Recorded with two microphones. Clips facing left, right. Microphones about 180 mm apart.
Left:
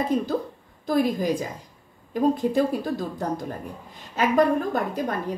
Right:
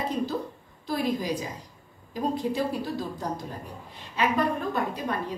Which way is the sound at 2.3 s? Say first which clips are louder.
Left 5 dB; 50° left (ahead or behind).